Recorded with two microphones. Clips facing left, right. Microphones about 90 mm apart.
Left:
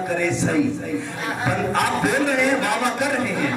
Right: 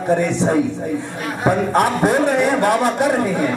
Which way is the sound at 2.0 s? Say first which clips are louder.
Right 4 dB; 20° right (ahead or behind).